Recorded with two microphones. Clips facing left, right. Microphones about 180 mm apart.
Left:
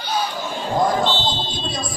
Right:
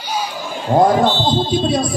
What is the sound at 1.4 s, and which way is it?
Speech, 55° right (ahead or behind).